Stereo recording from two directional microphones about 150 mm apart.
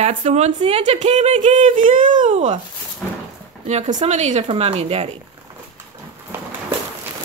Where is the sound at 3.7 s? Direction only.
55° right (ahead or behind).